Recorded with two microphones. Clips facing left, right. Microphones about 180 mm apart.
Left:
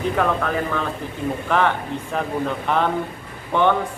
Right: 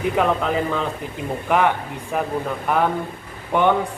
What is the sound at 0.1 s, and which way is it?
Speech, 15° right (ahead or behind).